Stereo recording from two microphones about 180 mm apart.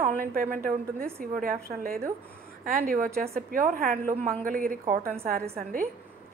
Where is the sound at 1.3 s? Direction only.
55° right (ahead or behind).